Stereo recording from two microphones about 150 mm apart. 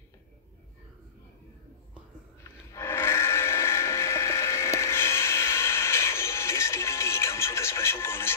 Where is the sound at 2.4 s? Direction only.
15° left (ahead or behind).